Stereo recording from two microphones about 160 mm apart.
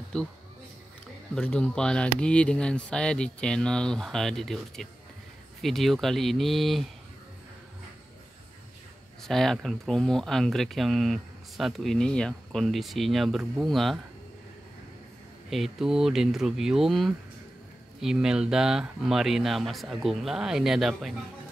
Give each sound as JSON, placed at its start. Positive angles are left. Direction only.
{"t": 0.1, "sound": "speech", "side_deg": 5}
{"t": 1.3, "sound": "speech", "side_deg": 5}
{"t": 9.2, "sound": "speech", "side_deg": 5}
{"t": 15.5, "sound": "speech", "side_deg": 0}